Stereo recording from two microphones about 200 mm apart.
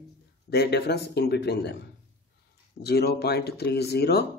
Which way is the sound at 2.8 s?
55° left (ahead or behind).